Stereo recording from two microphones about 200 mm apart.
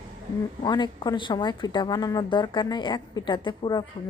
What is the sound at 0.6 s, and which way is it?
Speech, 25° left (ahead or behind).